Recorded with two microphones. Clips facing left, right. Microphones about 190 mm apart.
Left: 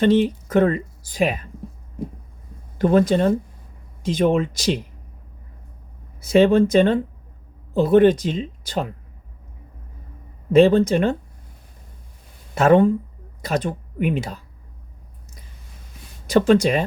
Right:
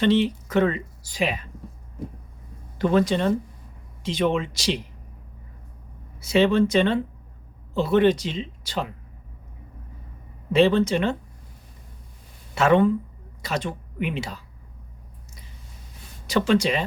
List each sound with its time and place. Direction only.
0.0 s speech: 50° left (ahead or behind)
2.7 s speech: 50° left (ahead or behind)
6.2 s speech: 50° left (ahead or behind)
10.5 s speech: 50° left (ahead or behind)
12.5 s speech: 50° left (ahead or behind)
16.2 s speech: 50° left (ahead or behind)